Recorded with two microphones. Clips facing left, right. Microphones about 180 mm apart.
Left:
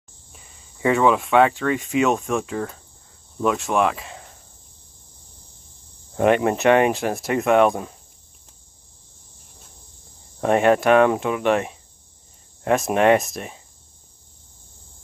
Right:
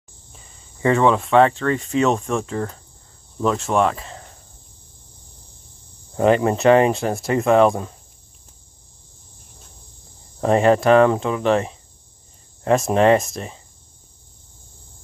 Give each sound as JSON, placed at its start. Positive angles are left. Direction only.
{"t": 0.8, "sound": "speech", "side_deg": 5}
{"t": 6.1, "sound": "speech", "side_deg": 0}
{"t": 10.4, "sound": "speech", "side_deg": 0}